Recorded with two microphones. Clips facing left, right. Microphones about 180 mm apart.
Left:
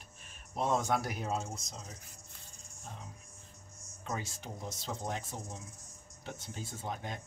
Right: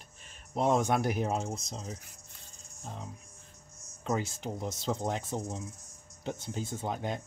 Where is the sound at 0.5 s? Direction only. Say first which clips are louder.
Right 4 dB; 20° right (ahead or behind).